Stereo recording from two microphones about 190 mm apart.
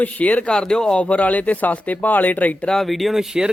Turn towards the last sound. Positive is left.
turn(degrees=-5)  # may be behind; listen again after turning